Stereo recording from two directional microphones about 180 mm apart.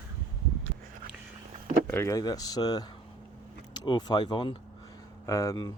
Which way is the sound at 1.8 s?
15° left (ahead or behind).